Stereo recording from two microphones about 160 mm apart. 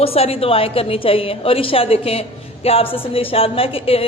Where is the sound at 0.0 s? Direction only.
35° left (ahead or behind).